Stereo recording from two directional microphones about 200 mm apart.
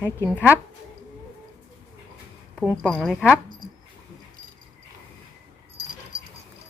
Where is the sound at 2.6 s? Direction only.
5° left (ahead or behind).